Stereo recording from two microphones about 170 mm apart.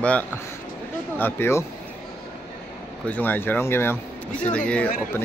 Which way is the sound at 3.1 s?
10° left (ahead or behind).